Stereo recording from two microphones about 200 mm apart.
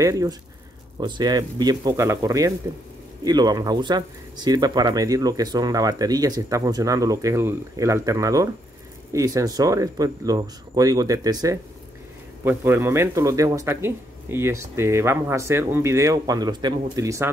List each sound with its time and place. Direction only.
0.0 s a man's voice: 15° right (ahead or behind)